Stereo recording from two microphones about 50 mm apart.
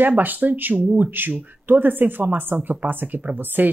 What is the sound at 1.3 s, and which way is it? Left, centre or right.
Speech, right.